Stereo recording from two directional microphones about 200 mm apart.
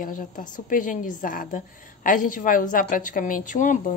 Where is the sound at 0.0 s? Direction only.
40° left (ahead or behind).